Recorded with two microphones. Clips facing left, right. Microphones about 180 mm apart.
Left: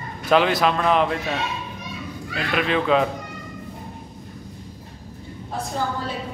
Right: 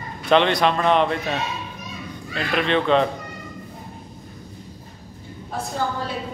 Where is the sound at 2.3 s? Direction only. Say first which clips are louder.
Right 1 dB; 5° left (ahead or behind).